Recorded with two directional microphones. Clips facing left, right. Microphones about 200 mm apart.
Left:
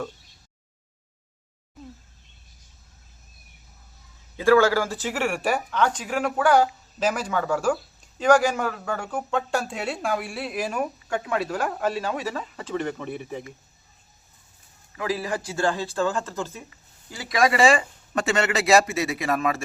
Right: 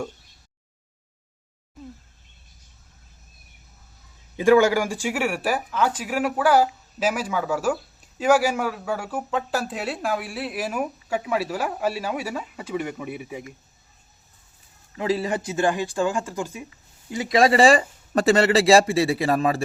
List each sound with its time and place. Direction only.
4.4 s speech: 15° right (ahead or behind)
14.9 s speech: 25° right (ahead or behind)